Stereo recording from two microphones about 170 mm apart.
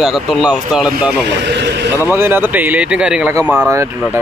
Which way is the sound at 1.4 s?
90° right.